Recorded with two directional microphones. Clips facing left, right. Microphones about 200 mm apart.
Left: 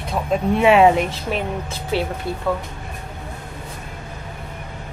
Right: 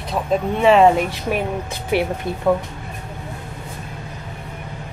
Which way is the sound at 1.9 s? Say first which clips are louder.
Right 3 dB; 15° right (ahead or behind).